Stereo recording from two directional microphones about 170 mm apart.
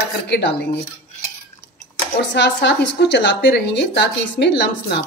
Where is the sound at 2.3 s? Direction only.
90° left.